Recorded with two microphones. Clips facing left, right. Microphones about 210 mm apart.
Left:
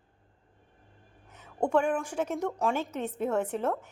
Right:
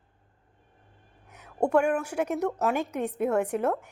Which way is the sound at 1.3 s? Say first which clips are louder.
Right 3 dB; 10° right (ahead or behind).